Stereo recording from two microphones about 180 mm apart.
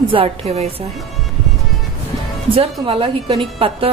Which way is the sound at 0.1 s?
30° right (ahead or behind).